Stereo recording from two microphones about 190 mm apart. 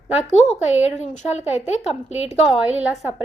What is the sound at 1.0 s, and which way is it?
Speech, 35° left (ahead or behind).